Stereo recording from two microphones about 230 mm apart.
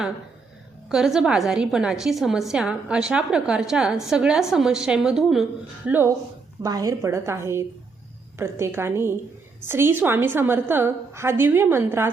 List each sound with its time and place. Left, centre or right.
0.9 s a woman's voice: centre